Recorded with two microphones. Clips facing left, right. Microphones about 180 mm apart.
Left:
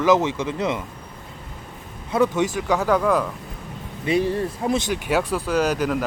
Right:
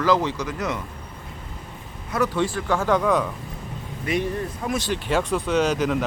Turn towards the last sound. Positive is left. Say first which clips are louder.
# even
turn(degrees=5)  # may be behind; listen again after turning